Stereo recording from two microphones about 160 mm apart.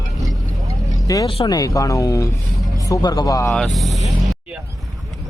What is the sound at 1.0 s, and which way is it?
Speech, 25° left (ahead or behind).